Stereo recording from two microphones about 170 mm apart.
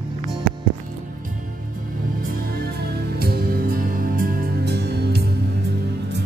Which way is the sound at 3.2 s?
65° right (ahead or behind).